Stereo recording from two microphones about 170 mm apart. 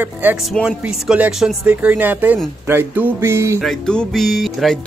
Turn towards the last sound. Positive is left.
turn(degrees=0)  # may be behind; listen again after turning